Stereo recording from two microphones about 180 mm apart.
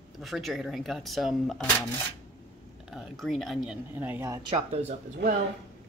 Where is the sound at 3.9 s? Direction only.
10° right (ahead or behind).